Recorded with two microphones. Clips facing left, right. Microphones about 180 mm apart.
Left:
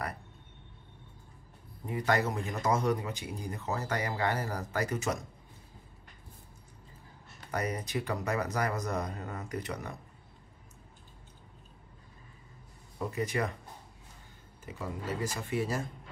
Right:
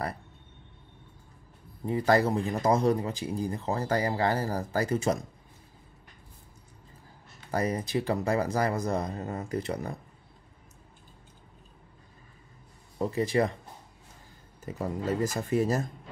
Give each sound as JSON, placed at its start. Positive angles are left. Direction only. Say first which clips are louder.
{"t": 1.9, "sound": "speech", "louder": "right 6 dB", "side_deg": -30}
{"t": 7.5, "sound": "speech", "louder": "right 5 dB", "side_deg": -30}
{"t": 13.0, "sound": "speech", "louder": "right 6 dB", "side_deg": -30}
{"t": 14.6, "sound": "speech", "louder": "right 7 dB", "side_deg": -40}